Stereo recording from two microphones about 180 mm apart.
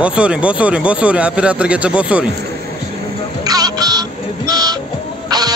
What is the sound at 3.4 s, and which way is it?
Music, 20° right (ahead or behind).